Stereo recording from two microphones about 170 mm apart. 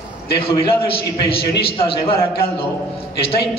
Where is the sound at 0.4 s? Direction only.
30° left (ahead or behind).